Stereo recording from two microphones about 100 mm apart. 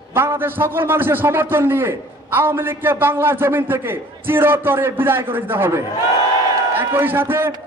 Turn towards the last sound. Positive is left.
turn(degrees=-20)  # may be behind; listen again after turning